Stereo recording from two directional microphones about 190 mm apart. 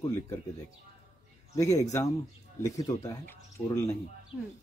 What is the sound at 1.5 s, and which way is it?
Speech, 15° left (ahead or behind).